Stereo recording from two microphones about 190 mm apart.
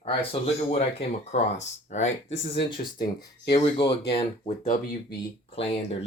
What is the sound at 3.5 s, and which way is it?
Speech, 30° left (ahead or behind).